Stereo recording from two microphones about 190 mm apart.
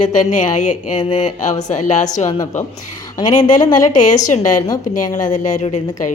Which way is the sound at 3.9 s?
40° left (ahead or behind).